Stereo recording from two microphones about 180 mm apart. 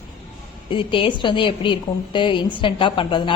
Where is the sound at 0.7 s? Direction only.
30° left (ahead or behind).